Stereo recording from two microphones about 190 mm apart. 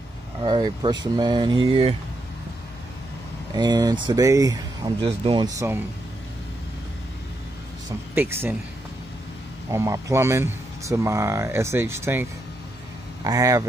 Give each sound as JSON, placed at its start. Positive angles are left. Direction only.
{"t": 0.4, "sound": "speech", "side_deg": -20}
{"t": 3.5, "sound": "speech", "side_deg": -20}
{"t": 8.1, "sound": "speech", "side_deg": -10}
{"t": 9.7, "sound": "speech", "side_deg": -15}